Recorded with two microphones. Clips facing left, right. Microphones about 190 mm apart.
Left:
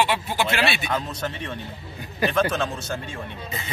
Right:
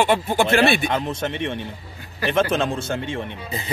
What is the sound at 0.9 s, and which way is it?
Speech, 25° right (ahead or behind).